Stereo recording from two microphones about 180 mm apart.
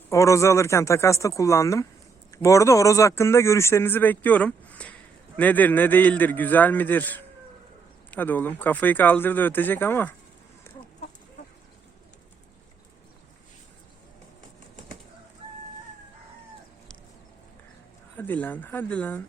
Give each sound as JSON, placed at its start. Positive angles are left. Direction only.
{"t": 0.1, "sound": "a man's voice", "side_deg": 15}
{"t": 18.2, "sound": "a man's voice", "side_deg": 10}